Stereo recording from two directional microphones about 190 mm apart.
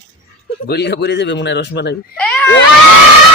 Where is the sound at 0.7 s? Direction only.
60° left (ahead or behind).